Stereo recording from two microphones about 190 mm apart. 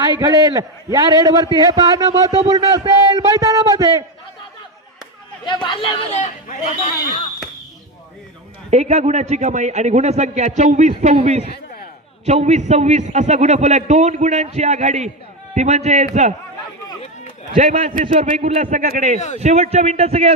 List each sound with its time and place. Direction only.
0.2 s a man's voice: 20° right (ahead or behind)
5.5 s speech: 25° left (ahead or behind); by 7.2 s 40° left (ahead or behind)
8.7 s a man's voice: 35° right (ahead or behind)
17.6 s a man's voice: 40° right (ahead or behind)